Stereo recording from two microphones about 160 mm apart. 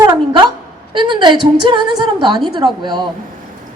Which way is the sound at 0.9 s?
30° right (ahead or behind).